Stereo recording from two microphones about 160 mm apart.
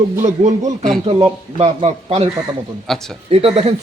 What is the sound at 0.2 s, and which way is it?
Speech, 45° right (ahead or behind).